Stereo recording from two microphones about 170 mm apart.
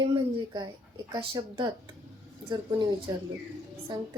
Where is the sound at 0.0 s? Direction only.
25° right (ahead or behind).